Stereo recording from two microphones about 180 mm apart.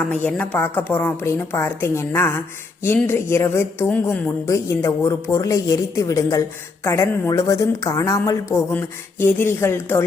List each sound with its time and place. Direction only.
0.0 s speech: 5° left (ahead or behind)